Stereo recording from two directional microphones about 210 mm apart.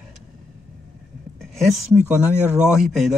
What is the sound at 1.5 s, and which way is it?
Speech, centre (ahead or behind).